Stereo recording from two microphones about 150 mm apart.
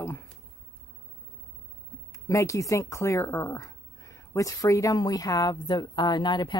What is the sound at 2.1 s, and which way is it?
Speech, 20° left (ahead or behind).